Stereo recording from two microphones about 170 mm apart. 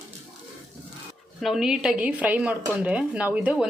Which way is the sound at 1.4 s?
Centre (ahead or behind).